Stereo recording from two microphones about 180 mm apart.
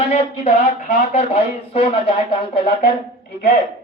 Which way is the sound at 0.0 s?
35° left (ahead or behind).